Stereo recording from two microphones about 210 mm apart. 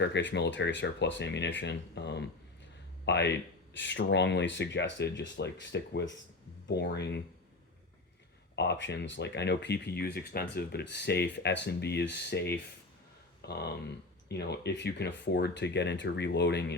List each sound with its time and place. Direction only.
0.0 s speech: 60° left (ahead or behind)
8.5 s speech: 55° left (ahead or behind)